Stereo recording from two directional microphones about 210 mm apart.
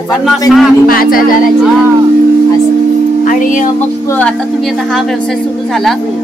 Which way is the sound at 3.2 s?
40° left (ahead or behind).